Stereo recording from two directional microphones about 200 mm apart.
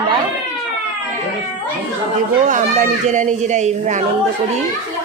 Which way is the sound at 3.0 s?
35° right (ahead or behind).